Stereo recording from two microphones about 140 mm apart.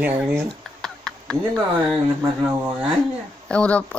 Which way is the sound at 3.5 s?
10° left (ahead or behind).